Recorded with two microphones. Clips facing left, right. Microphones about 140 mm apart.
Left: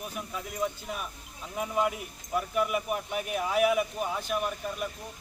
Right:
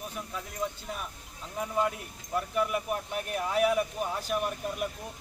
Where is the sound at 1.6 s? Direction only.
10° left (ahead or behind).